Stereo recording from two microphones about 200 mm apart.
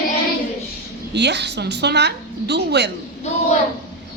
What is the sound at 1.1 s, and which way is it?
A man's voice, 60° right (ahead or behind).